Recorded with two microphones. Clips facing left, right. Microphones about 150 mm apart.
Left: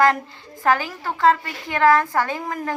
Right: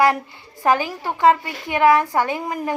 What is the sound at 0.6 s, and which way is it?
A woman's voice, 15° right (ahead or behind).